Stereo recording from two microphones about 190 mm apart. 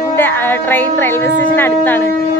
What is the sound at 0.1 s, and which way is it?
A woman's voice, 10° left (ahead or behind).